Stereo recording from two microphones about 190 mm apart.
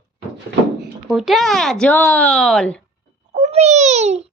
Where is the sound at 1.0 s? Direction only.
Centre (ahead or behind).